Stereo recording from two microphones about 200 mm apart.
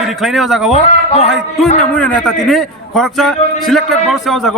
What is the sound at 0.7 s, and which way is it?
Speech, 35° left (ahead or behind).